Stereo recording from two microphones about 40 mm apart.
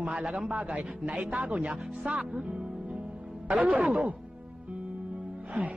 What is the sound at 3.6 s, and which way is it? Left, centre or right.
Speech, right.